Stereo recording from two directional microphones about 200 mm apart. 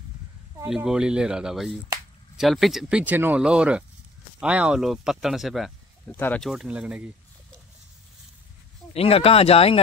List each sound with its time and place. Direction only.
0.7 s speech: 5° right (ahead or behind)
8.9 s speech: 30° left (ahead or behind)